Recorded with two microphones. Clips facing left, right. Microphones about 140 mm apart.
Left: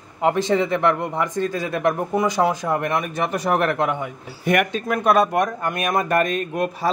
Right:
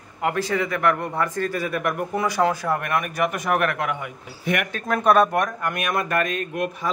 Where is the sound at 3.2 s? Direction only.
30° left (ahead or behind).